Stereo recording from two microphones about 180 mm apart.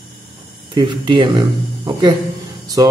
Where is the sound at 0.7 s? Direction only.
25° right (ahead or behind).